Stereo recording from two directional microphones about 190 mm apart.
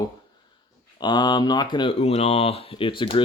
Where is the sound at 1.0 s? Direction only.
25° left (ahead or behind).